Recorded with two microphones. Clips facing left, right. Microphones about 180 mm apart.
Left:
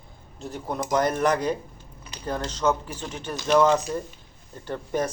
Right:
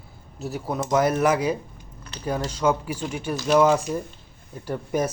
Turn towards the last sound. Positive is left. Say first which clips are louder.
# right 2 dB
turn(degrees=-10)  # may be behind; listen again after turning